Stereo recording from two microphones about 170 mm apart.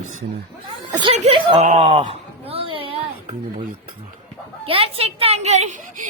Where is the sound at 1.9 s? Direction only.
30° right (ahead or behind).